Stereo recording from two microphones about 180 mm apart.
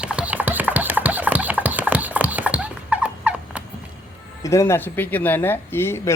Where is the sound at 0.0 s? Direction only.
5° right (ahead or behind).